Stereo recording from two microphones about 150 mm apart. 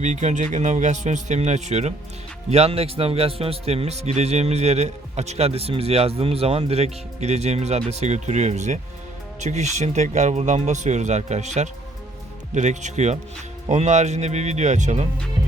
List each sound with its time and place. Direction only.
0.0 s a man's voice: 55° right (ahead or behind)